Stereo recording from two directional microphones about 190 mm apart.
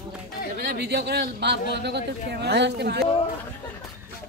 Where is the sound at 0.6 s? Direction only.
60° right (ahead or behind).